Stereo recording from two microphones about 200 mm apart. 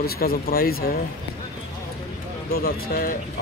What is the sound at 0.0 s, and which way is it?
Speech, 50° left (ahead or behind).